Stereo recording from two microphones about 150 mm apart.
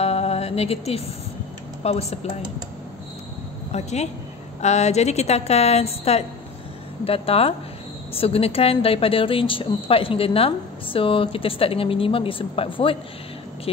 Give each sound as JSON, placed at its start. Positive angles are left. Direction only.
{"t": 0.0, "sound": "music", "side_deg": 45}
{"t": 1.8, "sound": "speech", "side_deg": 45}
{"t": 3.7, "sound": "a woman's voice", "side_deg": 50}